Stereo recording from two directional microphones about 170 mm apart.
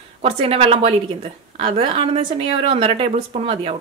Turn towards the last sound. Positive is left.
turn(degrees=-35)  # may be behind; listen again after turning